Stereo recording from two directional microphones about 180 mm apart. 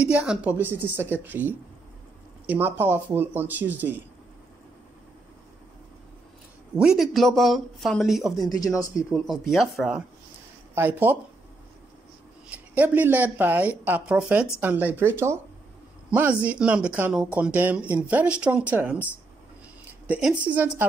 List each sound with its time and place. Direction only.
0.0 s speech: 5° right (ahead or behind)
6.8 s speech: centre (ahead or behind)
8.5 s speech: 20° left (ahead or behind)
9.1 s speech: centre (ahead or behind)
12.4 s speech: 10° right (ahead or behind)
20.1 s speech: 5° right (ahead or behind)